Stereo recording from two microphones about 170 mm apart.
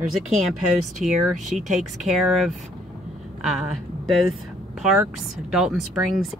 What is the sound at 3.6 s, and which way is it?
Speech, centre (ahead or behind).